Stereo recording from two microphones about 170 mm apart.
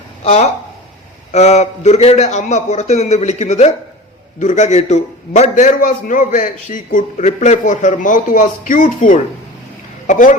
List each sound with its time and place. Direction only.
0.3 s a man's voice: 40° left (ahead or behind)